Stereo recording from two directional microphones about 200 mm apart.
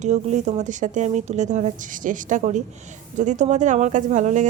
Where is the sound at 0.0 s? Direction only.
35° right (ahead or behind).